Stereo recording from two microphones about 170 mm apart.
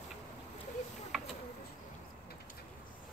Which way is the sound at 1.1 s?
Centre (ahead or behind).